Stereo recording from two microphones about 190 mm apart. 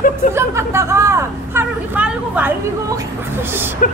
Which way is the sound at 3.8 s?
45° left (ahead or behind).